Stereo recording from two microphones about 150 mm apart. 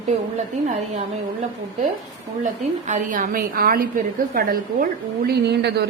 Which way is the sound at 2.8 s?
55° right (ahead or behind).